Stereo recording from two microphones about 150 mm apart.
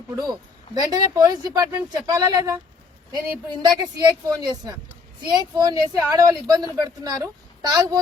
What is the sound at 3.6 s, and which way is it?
A woman's voice, 25° right (ahead or behind).